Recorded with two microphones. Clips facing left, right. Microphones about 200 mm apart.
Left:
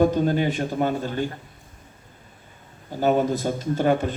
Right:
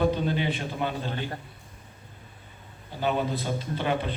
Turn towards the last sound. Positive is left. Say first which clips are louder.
# left 7 dB
turn(degrees=45)  # may be behind; listen again after turning